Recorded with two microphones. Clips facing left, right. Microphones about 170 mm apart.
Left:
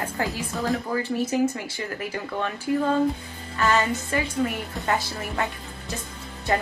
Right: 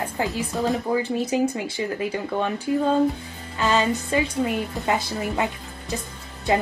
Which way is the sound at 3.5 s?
20° right (ahead or behind).